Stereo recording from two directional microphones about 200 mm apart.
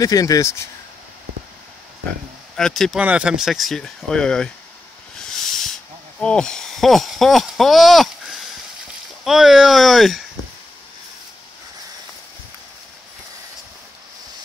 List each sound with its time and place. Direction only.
0.0 s speech: 15° left (ahead or behind)
2.5 s speech: centre (ahead or behind)
5.3 s a sound: centre (ahead or behind)
9.2 s speech: centre (ahead or behind)